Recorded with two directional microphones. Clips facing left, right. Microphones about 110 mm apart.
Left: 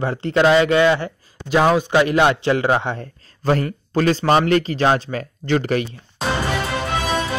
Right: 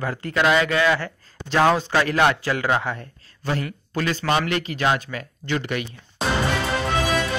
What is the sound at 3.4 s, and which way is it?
A man's voice, 40° left (ahead or behind).